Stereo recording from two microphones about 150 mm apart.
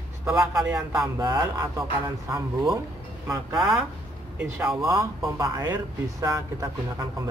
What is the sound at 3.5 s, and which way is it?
Speech, centre (ahead or behind).